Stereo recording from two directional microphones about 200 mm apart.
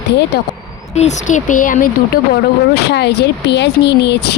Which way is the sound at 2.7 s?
55° left (ahead or behind).